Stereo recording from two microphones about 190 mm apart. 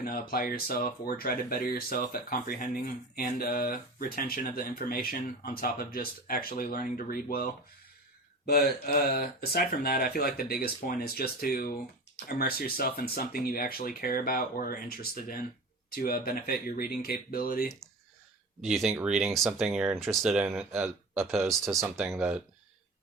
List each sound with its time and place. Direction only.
0.0 s speech: 50° left (ahead or behind)
18.6 s speech: centre (ahead or behind)